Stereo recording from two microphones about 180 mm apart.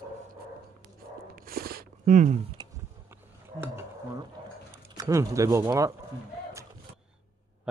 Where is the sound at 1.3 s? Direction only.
55° right (ahead or behind).